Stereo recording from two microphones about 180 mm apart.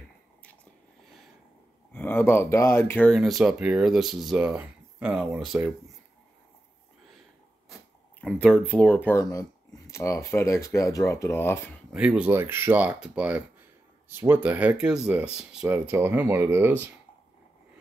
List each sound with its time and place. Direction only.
2.0 s speech: 10° left (ahead or behind)
3.2 s speech: centre (ahead or behind)
8.2 s speech: 5° left (ahead or behind)
11.9 s speech: 5° right (ahead or behind)